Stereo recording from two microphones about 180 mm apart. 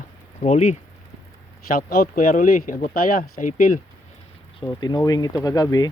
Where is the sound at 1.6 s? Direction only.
55° left (ahead or behind).